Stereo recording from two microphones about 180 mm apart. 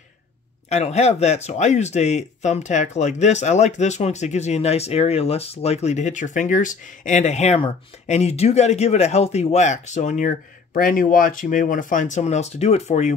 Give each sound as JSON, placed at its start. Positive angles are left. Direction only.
{"t": 0.7, "sound": "speech", "side_deg": 35}